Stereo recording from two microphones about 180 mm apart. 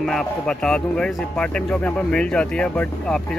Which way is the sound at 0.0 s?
Centre (ahead or behind).